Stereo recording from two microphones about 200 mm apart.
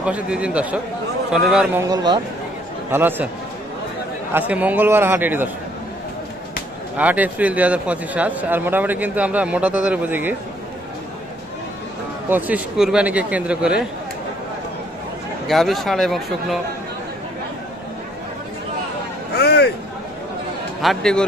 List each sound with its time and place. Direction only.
0.0 s a man's voice: 5° right (ahead or behind)
2.9 s a man's voice: 10° right (ahead or behind)
4.3 s a man's voice: 10° right (ahead or behind)
7.0 s a man's voice: 10° right (ahead or behind)
12.3 s a man's voice: 10° right (ahead or behind)
15.4 s speech: centre (ahead or behind)
19.3 s a sound: 55° left (ahead or behind)
20.8 s speech: centre (ahead or behind)